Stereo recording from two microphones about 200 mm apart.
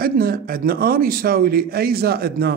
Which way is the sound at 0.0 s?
50° right (ahead or behind).